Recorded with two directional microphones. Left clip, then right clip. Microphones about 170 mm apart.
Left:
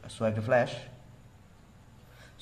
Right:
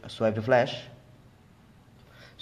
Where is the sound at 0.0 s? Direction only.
25° right (ahead or behind).